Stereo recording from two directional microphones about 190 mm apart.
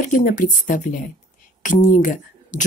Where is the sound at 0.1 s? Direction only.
45° left (ahead or behind).